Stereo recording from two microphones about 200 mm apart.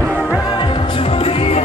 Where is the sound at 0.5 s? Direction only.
25° left (ahead or behind).